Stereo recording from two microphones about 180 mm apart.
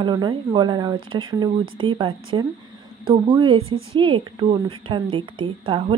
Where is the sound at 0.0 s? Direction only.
25° right (ahead or behind).